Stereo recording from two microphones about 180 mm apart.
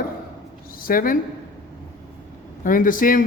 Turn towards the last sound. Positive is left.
turn(degrees=50)  # may be behind; listen again after turning